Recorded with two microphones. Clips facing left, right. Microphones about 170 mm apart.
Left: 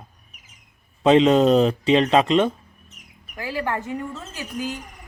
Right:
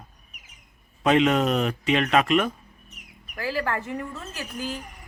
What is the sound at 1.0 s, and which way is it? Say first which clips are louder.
Speech: left 5 dB; 30° left (ahead or behind).